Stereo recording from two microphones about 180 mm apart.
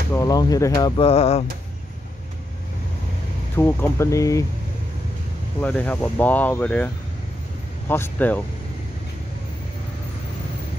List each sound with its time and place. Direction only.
0.1 s speech: 20° left (ahead or behind); by 1.4 s 35° left (ahead or behind)
3.5 s speech: 10° left (ahead or behind)
5.6 s speech: 5° left (ahead or behind)
7.9 s speech: 10° left (ahead or behind)